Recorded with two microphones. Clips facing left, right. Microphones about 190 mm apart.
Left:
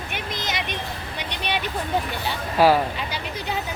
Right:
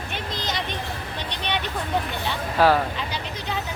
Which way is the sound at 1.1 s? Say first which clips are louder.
Left 1 dB; 10° left (ahead or behind).